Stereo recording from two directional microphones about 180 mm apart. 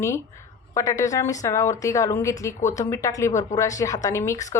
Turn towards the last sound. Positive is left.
turn(degrees=15)  # may be behind; listen again after turning